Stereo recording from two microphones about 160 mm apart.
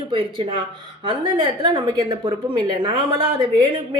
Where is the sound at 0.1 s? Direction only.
30° right (ahead or behind).